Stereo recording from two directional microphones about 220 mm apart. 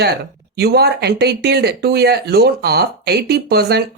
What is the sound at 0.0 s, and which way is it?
Speech, 45° right (ahead or behind).